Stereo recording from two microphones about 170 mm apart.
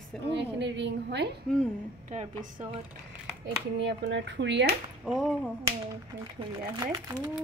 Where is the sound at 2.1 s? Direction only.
45° right (ahead or behind).